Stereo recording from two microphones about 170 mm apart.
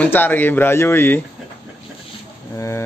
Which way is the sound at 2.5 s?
15° left (ahead or behind).